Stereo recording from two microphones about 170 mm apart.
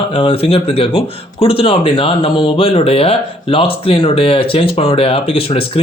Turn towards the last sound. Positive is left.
turn(degrees=35)  # may be behind; listen again after turning